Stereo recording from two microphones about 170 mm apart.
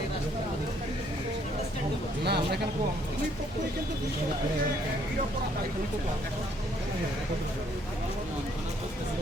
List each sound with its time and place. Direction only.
2.2 s speech: 75° right (ahead or behind)